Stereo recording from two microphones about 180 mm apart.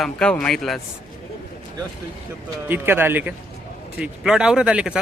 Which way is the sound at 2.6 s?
10° right (ahead or behind).